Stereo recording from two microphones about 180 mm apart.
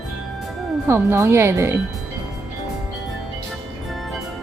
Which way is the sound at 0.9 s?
15° right (ahead or behind).